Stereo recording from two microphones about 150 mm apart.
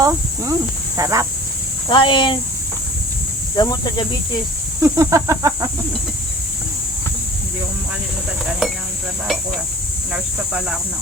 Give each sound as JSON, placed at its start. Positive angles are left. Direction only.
{"t": 0.0, "sound": "speech", "side_deg": -20}
{"t": 0.9, "sound": "snake", "side_deg": -20}
{"t": 1.9, "sound": "speech", "side_deg": 35}
{"t": 3.5, "sound": "speech", "side_deg": 30}
{"t": 4.8, "sound": "snake", "side_deg": -20}
{"t": 8.4, "sound": "speech", "side_deg": -5}
{"t": 10.1, "sound": "speech", "side_deg": -5}